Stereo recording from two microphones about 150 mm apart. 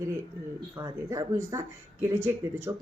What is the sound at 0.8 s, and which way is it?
Speech, 25° right (ahead or behind).